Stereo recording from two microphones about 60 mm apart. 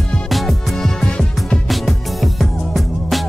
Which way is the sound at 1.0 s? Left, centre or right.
Centre.